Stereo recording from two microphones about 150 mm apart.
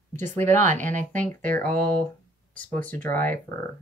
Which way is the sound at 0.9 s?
10° left (ahead or behind).